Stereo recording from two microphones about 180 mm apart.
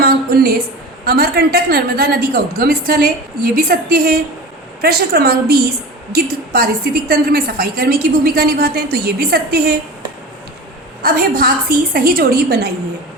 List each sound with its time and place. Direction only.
0.0 s a sound: 55° right (ahead or behind)
1.0 s a woman's voice: 60° right (ahead or behind)
11.0 s a woman's voice: 55° right (ahead or behind)